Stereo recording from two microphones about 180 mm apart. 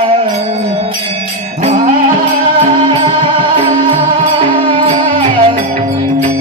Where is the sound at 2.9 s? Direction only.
30° right (ahead or behind).